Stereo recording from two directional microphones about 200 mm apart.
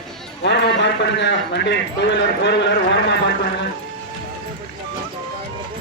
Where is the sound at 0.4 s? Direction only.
60° left (ahead or behind).